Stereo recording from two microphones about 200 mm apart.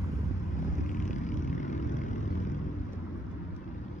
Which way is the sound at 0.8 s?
40° left (ahead or behind).